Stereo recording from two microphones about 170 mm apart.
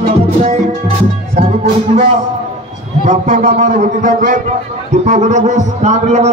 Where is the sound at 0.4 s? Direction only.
40° right (ahead or behind).